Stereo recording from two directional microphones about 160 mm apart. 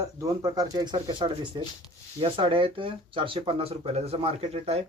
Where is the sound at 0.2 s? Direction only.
25° right (ahead or behind).